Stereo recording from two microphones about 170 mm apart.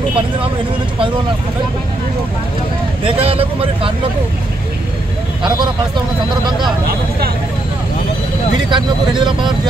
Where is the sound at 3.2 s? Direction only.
35° right (ahead or behind).